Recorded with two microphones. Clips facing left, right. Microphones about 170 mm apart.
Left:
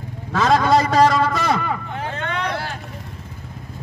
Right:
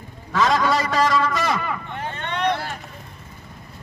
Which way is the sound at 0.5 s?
35° left (ahead or behind).